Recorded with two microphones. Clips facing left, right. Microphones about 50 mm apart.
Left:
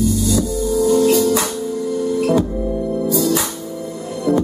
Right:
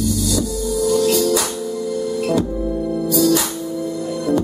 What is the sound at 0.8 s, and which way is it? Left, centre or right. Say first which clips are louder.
Music: left 2 dB; left.